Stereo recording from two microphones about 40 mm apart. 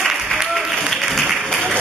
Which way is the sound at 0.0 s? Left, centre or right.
Centre.